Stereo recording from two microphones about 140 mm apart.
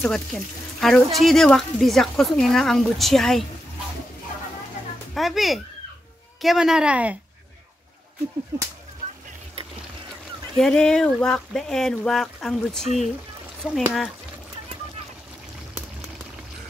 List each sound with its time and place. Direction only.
0.0 s speech: 5° left (ahead or behind)
5.1 s speech: centre (ahead or behind)
8.5 s speech: 20° right (ahead or behind)
10.6 s speech: 5° left (ahead or behind)